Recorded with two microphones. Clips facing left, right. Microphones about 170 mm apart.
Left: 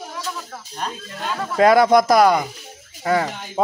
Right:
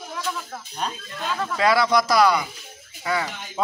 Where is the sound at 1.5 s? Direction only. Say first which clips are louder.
Left 7 dB; 50° left (ahead or behind).